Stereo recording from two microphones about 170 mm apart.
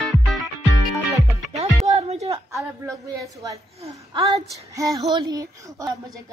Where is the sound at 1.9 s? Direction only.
40° right (ahead or behind).